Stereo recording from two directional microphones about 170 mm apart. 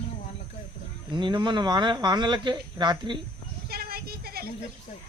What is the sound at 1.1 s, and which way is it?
Speech, 25° right (ahead or behind).